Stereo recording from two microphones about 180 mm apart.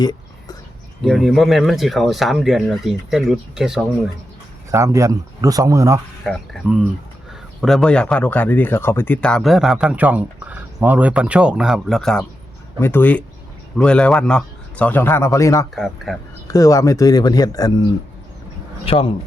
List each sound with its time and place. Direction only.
0.0 s whispering: 20° left (ahead or behind)
1.0 s speech: centre (ahead or behind)
4.7 s speech: 15° right (ahead or behind)
6.2 s speech: centre (ahead or behind); by 15.6 s 15° left (ahead or behind)
15.7 s speech: centre (ahead or behind)
16.5 s speech: 20° left (ahead or behind)
18.9 s speech: 30° left (ahead or behind)